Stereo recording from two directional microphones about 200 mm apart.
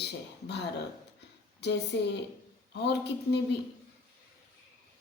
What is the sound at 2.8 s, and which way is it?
Speech, 55° left (ahead or behind).